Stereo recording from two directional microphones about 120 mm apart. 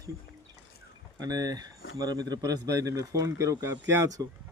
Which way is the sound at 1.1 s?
30° right (ahead or behind).